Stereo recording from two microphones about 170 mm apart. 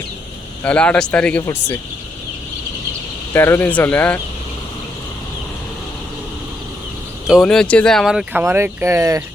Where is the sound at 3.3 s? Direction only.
15° left (ahead or behind).